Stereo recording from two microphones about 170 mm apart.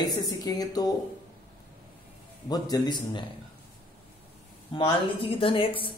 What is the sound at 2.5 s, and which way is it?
Speech, 25° left (ahead or behind).